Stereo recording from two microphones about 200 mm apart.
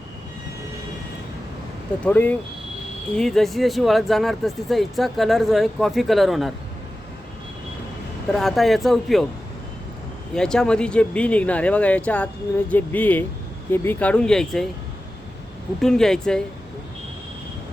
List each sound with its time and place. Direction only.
2.0 s speech: 10° left (ahead or behind)
8.3 s speech: centre (ahead or behind)
10.3 s speech: 5° left (ahead or behind)
15.8 s speech: 5° left (ahead or behind)